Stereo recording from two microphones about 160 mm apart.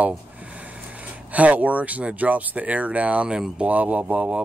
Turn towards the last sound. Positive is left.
turn(degrees=-10)  # may be behind; listen again after turning